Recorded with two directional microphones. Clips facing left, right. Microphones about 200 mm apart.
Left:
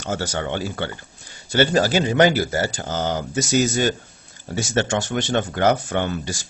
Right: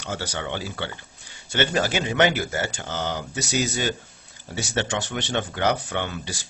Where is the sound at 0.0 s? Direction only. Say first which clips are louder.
Left 5 dB; 45° left (ahead or behind).